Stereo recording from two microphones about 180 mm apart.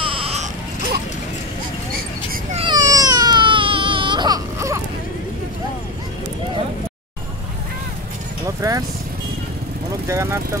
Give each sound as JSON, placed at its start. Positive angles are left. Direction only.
{"t": 0.0, "sound": "a sound", "side_deg": -30}
{"t": 2.5, "sound": "baby cry", "side_deg": -30}
{"t": 8.5, "sound": "speech", "side_deg": -20}
{"t": 10.0, "sound": "speech", "side_deg": -15}